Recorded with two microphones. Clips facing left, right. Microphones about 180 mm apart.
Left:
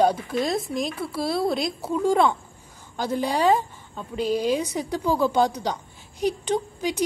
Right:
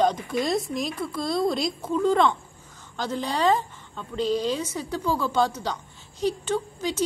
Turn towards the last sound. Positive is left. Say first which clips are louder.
# left 2 dB
turn(degrees=15)  # may be behind; listen again after turning